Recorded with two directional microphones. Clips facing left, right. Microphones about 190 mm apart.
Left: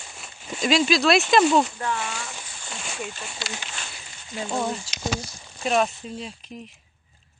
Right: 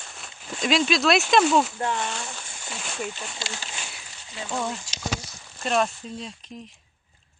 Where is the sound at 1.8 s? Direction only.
25° right (ahead or behind).